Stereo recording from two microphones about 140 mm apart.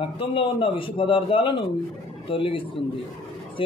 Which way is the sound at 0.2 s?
40° left (ahead or behind).